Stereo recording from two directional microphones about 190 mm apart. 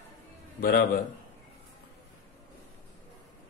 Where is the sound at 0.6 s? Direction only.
55° left (ahead or behind).